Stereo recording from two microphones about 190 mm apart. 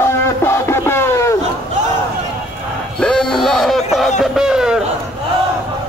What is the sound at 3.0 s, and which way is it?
Music, 5° left (ahead or behind).